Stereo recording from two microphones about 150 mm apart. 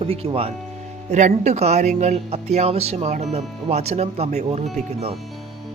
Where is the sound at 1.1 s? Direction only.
50° right (ahead or behind).